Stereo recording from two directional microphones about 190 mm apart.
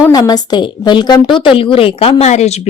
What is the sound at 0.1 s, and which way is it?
A woman's voice, 20° left (ahead or behind).